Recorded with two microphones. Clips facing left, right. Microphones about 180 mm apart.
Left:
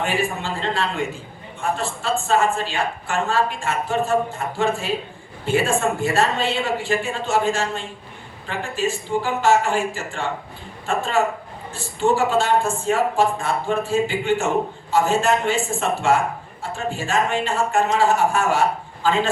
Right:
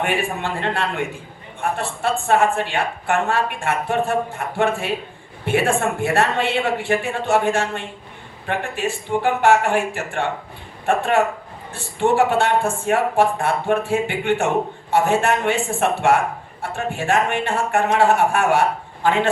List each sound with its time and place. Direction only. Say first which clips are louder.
0.0 s a woman's voice: right 1 dB; 60° right (ahead or behind)